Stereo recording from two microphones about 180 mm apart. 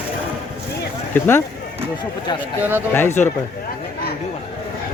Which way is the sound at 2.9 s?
10° left (ahead or behind).